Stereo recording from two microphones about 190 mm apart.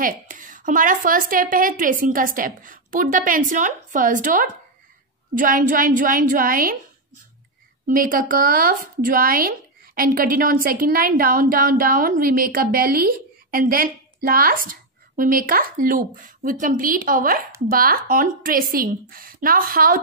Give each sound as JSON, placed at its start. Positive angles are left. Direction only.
{"t": 0.0, "sound": "a woman's voice", "side_deg": -45}
{"t": 7.9, "sound": "a woman's voice", "side_deg": -45}